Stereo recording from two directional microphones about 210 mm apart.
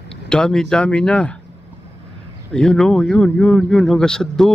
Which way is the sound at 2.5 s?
5° left (ahead or behind).